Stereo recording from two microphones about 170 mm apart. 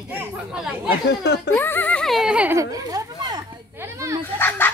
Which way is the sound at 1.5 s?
10° left (ahead or behind).